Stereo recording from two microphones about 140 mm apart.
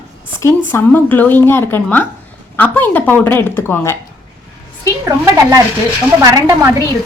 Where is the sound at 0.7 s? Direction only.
15° left (ahead or behind).